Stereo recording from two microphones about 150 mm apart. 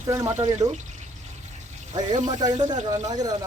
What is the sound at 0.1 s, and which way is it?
Speech, 20° right (ahead or behind).